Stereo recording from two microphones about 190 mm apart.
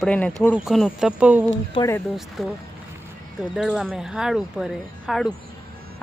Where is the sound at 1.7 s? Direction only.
20° left (ahead or behind).